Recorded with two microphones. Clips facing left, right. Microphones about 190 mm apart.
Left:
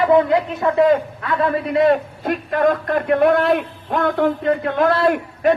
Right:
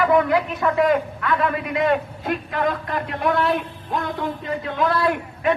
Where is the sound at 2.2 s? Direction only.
50° left (ahead or behind).